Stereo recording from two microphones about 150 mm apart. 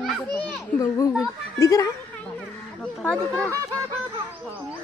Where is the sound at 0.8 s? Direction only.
20° left (ahead or behind).